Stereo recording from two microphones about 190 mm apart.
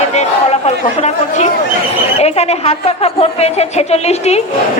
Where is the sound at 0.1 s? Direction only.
35° left (ahead or behind).